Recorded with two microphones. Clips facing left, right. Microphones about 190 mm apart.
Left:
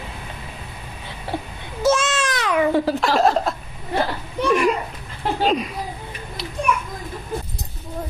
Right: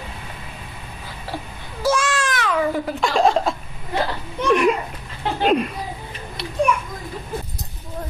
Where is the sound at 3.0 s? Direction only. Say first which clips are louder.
Even; centre (ahead or behind).